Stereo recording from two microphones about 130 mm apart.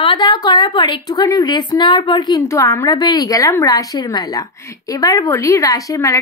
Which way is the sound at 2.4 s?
25° left (ahead or behind).